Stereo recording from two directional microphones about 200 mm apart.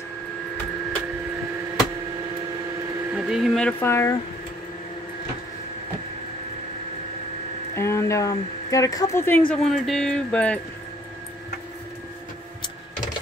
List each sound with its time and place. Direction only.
3.2 s speech: 5° right (ahead or behind)
7.7 s speech: 15° left (ahead or behind)
9.5 s speech: centre (ahead or behind)